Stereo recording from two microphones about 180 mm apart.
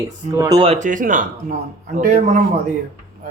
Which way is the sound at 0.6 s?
40° right (ahead or behind).